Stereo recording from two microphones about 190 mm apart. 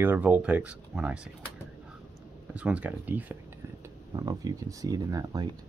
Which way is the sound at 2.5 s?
5° right (ahead or behind).